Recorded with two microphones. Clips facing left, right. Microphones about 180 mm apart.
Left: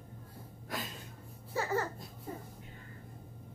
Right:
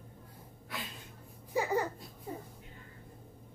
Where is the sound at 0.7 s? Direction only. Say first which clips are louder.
Left 3 dB; 45° left (ahead or behind).